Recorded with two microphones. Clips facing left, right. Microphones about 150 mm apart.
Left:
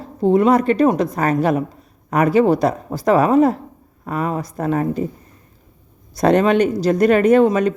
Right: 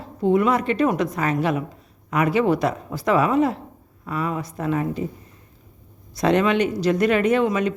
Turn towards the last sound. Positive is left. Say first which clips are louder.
# left 6 dB
turn(degrees=40)  # may be behind; listen again after turning